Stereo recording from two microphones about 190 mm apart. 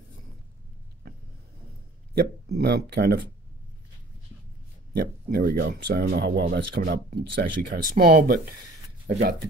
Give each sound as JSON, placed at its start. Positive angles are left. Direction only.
{"t": 2.1, "sound": "speech", "side_deg": -55}
{"t": 4.9, "sound": "speech", "side_deg": -55}